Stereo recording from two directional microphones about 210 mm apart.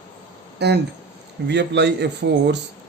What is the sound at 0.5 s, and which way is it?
A man's voice, 55° right (ahead or behind).